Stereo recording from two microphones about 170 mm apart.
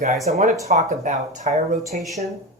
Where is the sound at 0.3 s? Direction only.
40° right (ahead or behind).